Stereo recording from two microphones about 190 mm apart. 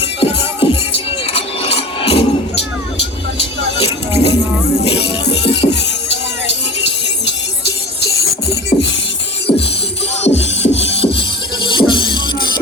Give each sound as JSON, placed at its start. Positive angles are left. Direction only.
{"t": 0.0, "sound": "music", "side_deg": 30}
{"t": 3.8, "sound": "music", "side_deg": 30}
{"t": 8.7, "sound": "music", "side_deg": 35}